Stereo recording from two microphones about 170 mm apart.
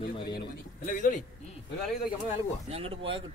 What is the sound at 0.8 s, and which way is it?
Speech, 50° left (ahead or behind).